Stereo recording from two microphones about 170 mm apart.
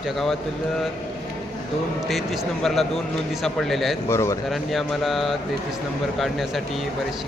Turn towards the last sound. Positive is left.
turn(degrees=0)  # may be behind; listen again after turning